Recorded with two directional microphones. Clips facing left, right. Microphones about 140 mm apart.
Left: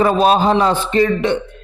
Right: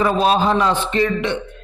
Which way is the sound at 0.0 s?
40° left (ahead or behind).